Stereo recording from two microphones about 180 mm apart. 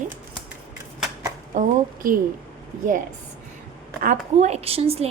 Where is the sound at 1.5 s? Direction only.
45° right (ahead or behind).